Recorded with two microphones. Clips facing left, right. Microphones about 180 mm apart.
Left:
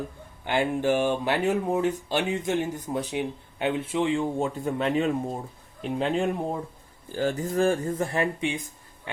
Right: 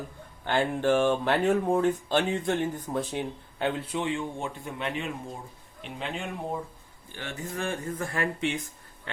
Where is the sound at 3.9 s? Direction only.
30° left (ahead or behind).